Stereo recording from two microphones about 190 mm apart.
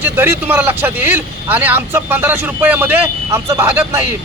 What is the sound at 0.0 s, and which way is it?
A man's voice, 10° right (ahead or behind).